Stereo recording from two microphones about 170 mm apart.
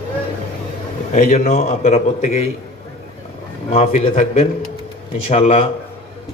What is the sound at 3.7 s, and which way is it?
A man's voice, 40° left (ahead or behind).